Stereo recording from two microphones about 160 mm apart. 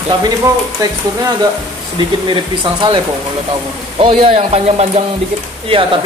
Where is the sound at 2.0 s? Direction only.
30° right (ahead or behind).